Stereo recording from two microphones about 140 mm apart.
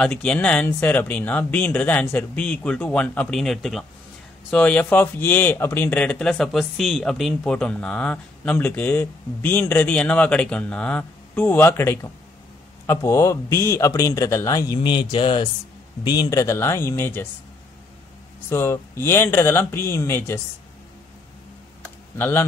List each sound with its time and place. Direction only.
0.0 s a man's voice: 5° left (ahead or behind); by 14.8 s 25° left (ahead or behind)
14.8 s a man's voice: 35° left (ahead or behind); by 17.3 s 15° left (ahead or behind)
18.5 s speech: 20° left (ahead or behind)
22.1 s speech: 15° left (ahead or behind)